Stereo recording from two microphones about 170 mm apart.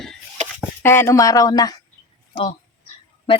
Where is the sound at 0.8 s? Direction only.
15° left (ahead or behind).